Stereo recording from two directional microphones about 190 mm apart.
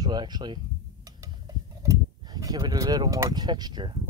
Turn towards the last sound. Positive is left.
turn(degrees=-25)  # may be behind; listen again after turning